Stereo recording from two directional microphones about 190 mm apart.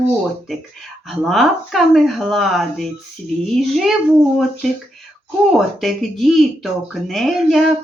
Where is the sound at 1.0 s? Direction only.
Centre (ahead or behind).